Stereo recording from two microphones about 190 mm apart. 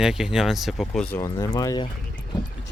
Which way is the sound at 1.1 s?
15° left (ahead or behind).